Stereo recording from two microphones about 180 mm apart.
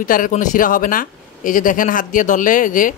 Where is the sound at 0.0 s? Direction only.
50° left (ahead or behind).